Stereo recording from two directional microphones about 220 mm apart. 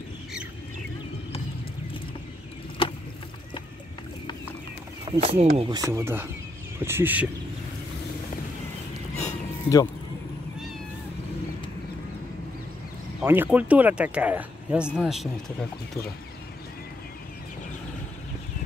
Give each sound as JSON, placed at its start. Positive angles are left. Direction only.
{"t": 5.0, "sound": "speech", "side_deg": -20}
{"t": 9.2, "sound": "a sound", "side_deg": 15}
{"t": 13.2, "sound": "speech", "side_deg": -10}